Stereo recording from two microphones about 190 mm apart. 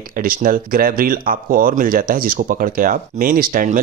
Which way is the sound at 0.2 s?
50° right (ahead or behind).